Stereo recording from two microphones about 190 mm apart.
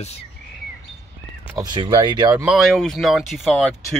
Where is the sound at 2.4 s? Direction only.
Centre (ahead or behind).